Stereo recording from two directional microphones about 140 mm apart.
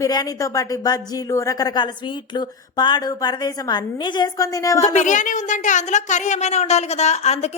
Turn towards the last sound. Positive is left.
turn(degrees=50)  # may be behind; listen again after turning